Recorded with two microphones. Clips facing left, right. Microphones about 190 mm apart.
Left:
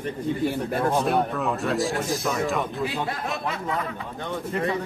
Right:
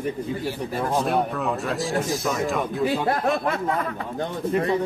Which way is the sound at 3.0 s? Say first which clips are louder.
Right 7 dB; 50° right (ahead or behind).